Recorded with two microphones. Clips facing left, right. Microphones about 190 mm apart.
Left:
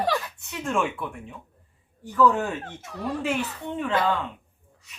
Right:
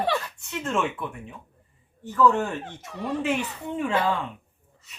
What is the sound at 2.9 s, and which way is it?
Speech, 5° left (ahead or behind).